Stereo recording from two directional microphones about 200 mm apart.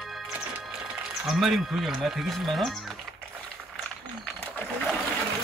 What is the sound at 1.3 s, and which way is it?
Speech, centre (ahead or behind).